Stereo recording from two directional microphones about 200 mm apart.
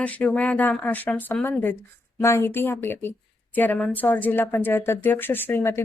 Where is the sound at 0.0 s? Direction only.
5° left (ahead or behind).